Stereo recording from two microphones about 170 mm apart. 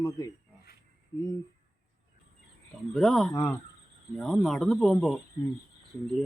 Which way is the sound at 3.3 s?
15° left (ahead or behind).